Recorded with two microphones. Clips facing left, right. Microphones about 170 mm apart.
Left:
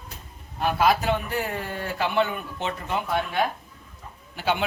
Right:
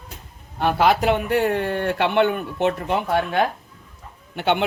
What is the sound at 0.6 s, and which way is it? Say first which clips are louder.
A man's voice: right 4 dB; 70° right (ahead or behind).